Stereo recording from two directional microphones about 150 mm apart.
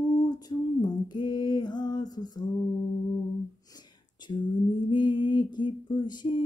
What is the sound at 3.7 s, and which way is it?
Whispering, 30° left (ahead or behind).